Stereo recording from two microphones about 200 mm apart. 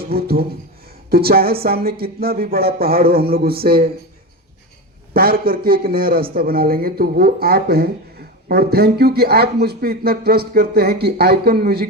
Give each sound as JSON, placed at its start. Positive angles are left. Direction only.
{"t": 0.0, "sound": "speech", "side_deg": -50}
{"t": 5.1, "sound": "speech", "side_deg": -50}